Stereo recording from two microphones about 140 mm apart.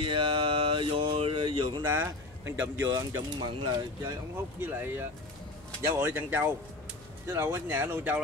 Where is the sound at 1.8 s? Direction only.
20° right (ahead or behind).